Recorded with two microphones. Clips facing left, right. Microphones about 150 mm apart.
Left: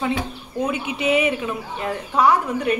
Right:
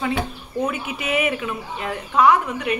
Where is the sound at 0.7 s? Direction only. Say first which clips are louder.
Left 8 dB; 25° left (ahead or behind).